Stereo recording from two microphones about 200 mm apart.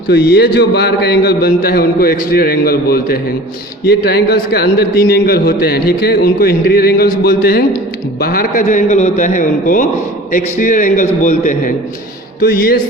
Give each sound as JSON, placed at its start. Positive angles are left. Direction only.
{"t": 0.1, "sound": "a man's voice", "side_deg": 55}